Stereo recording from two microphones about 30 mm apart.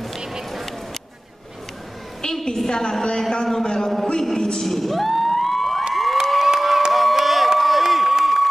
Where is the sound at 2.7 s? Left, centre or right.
Left.